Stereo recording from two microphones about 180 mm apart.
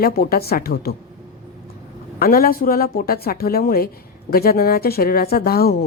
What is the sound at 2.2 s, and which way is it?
A woman's voice, 55° left (ahead or behind).